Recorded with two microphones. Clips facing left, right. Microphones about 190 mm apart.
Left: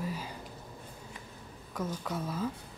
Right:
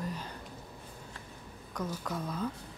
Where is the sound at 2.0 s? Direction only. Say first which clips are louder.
Left 1 dB; 5° left (ahead or behind).